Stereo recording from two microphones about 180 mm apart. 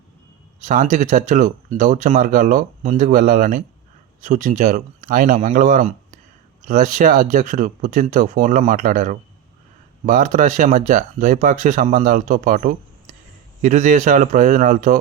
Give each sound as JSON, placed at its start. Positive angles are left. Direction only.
{"t": 0.6, "sound": "speech", "side_deg": -45}